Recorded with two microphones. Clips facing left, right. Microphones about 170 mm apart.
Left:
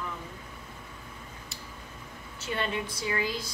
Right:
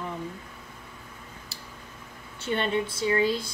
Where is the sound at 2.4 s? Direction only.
30° right (ahead or behind).